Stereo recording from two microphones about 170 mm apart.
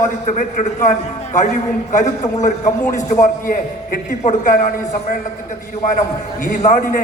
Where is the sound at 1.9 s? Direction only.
45° left (ahead or behind).